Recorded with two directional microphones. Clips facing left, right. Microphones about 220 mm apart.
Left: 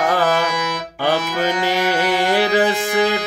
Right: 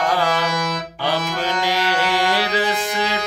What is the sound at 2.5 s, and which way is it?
Music, 50° left (ahead or behind).